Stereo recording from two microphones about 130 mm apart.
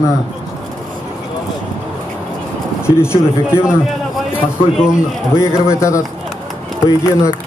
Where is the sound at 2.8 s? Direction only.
20° left (ahead or behind).